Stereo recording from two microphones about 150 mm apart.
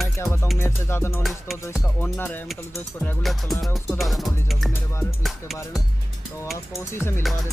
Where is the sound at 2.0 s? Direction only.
15° left (ahead or behind).